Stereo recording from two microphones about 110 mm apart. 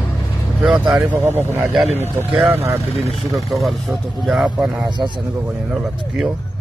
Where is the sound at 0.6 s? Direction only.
5° right (ahead or behind).